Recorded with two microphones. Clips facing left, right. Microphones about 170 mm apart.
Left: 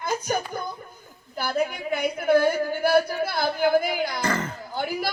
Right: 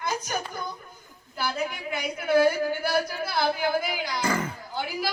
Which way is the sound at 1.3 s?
50° left (ahead or behind).